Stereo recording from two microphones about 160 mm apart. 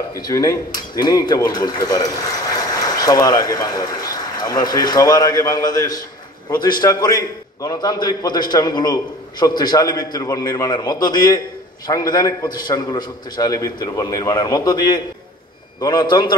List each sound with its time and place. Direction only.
0.1 s a man's voice: 20° left (ahead or behind)